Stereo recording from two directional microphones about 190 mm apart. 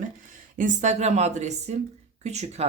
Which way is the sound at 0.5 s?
40° right (ahead or behind).